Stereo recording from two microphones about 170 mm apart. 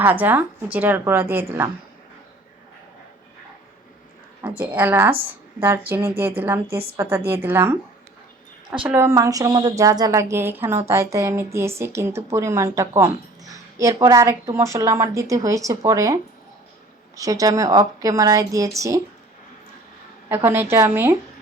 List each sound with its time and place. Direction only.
0.0 s a woman's voice: 10° right (ahead or behind)
4.4 s a woman's voice: 10° right (ahead or behind)
8.8 s a woman's voice: 15° right (ahead or behind)
17.2 s a woman's voice: 20° right (ahead or behind)
20.3 s a woman's voice: 15° right (ahead or behind)